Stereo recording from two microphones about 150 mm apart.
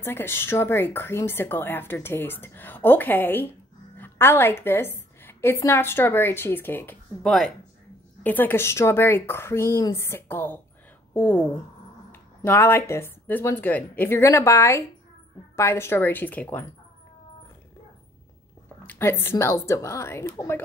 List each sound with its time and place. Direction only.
0.0 s speech: 15° left (ahead or behind)
7.2 s speech: centre (ahead or behind)
18.8 s speech: 15° left (ahead or behind)